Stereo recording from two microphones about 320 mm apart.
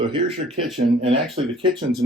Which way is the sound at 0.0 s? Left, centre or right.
Centre.